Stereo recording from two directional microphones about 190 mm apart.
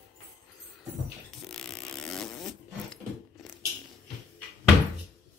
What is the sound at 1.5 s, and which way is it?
Wood, 5° left (ahead or behind).